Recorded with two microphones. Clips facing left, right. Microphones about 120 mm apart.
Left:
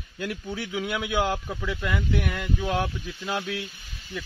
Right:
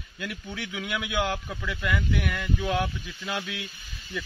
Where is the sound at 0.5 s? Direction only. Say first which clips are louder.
Left 2 dB; 35° left (ahead or behind).